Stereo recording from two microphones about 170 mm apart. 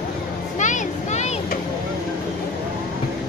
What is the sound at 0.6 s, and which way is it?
Vehicle, 45° left (ahead or behind).